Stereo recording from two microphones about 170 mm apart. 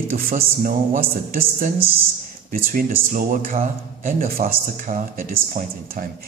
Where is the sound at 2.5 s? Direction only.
55° right (ahead or behind).